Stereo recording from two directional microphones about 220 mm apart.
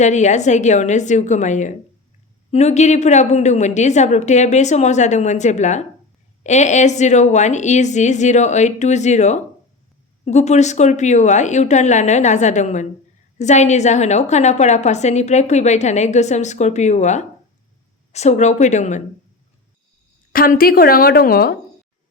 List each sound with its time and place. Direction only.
0.0 s a woman's voice: 30° left (ahead or behind)
20.3 s a woman's voice: 40° left (ahead or behind)